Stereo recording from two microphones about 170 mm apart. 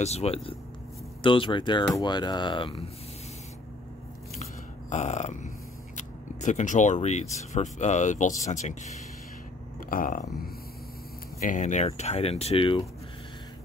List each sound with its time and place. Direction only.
0.0 s speech: 40° left (ahead or behind)
4.4 s a sound: 45° left (ahead or behind)
5.9 s speech: 45° left (ahead or behind)
9.8 s speech: 55° left (ahead or behind); by 12.8 s 30° left (ahead or behind)